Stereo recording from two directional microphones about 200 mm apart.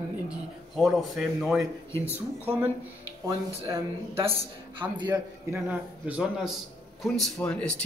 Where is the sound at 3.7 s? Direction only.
10° right (ahead or behind).